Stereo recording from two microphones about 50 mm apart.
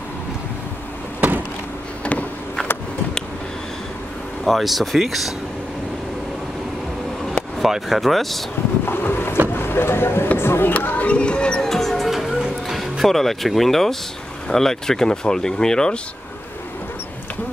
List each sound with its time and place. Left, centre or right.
4.5 s speech: centre
7.6 s speech: centre
8.8 s boat: left
9.5 s vehicle: left
10.7 s speech: left; by 11.6 s centre
11.6 s music: centre
14.5 s speech: centre